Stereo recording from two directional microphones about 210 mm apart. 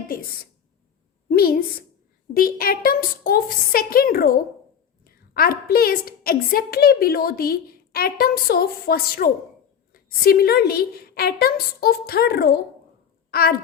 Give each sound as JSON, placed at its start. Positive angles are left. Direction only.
{"t": 1.3, "sound": "a woman's voice", "side_deg": 45}